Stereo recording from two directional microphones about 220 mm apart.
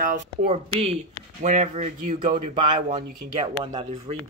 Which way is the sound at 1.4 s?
35° right (ahead or behind).